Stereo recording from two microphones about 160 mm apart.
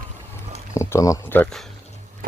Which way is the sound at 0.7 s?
20° left (ahead or behind).